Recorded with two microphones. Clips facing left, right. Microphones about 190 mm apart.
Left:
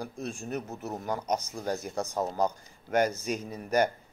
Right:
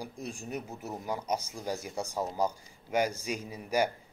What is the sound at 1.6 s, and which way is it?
A man's voice, 10° right (ahead or behind).